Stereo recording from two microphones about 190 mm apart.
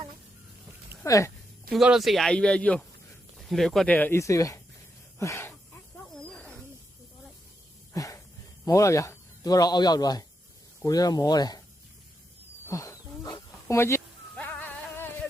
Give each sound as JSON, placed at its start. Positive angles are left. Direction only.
{"t": 1.0, "sound": "speech", "side_deg": 15}
{"t": 1.7, "sound": "speech", "side_deg": 0}
{"t": 6.3, "sound": "snake", "side_deg": 5}
{"t": 7.9, "sound": "a sound", "side_deg": 15}
{"t": 8.6, "sound": "speech", "side_deg": 15}
{"t": 12.6, "sound": "goat", "side_deg": 15}